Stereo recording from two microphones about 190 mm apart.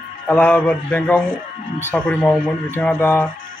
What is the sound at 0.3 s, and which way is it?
A man's voice, 10° left (ahead or behind).